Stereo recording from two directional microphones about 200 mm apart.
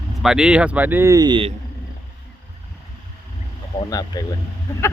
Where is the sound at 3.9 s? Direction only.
20° left (ahead or behind).